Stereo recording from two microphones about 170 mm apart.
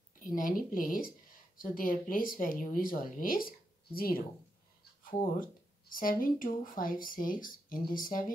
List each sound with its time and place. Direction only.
0.2 s speech: 50° left (ahead or behind)
5.2 s speech: 55° left (ahead or behind)